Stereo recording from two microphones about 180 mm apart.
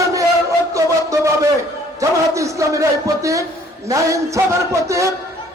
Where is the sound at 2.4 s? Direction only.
15° right (ahead or behind).